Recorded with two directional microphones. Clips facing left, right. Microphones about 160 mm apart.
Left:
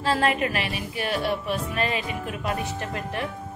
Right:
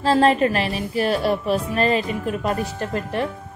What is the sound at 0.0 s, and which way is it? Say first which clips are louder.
A woman's voice: right 7 dB; 35° right (ahead or behind).